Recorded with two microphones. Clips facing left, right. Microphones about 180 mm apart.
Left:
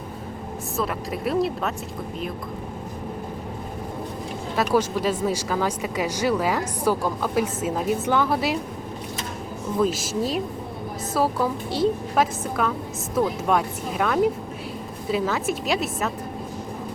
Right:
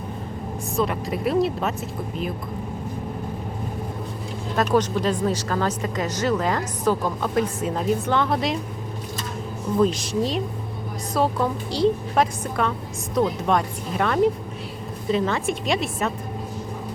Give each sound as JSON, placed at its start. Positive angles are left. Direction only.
{"t": 0.8, "sound": "a woman's voice", "side_deg": 0}
{"t": 4.5, "sound": "speech", "side_deg": 10}
{"t": 9.8, "sound": "a woman's voice", "side_deg": 5}